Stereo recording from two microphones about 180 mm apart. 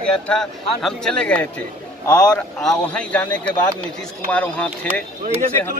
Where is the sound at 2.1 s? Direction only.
20° left (ahead or behind).